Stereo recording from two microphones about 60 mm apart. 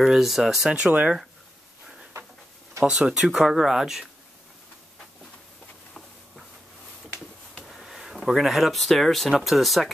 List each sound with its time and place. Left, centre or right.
0.0 s speech: centre
0.7 s speech: centre
2.8 s speech: centre
7.6 s speech: centre